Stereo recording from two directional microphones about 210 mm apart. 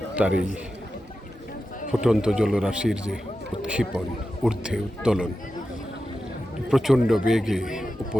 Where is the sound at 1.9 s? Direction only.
5° right (ahead or behind).